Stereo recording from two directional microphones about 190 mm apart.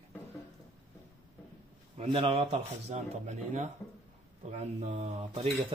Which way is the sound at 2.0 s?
30° right (ahead or behind).